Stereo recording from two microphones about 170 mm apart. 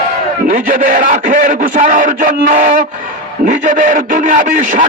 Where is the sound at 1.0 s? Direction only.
50° right (ahead or behind).